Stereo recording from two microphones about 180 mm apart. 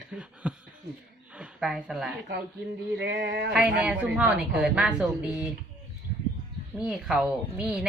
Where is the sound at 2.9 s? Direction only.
80° right.